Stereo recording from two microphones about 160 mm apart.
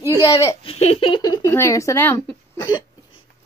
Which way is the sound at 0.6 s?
40° left (ahead or behind).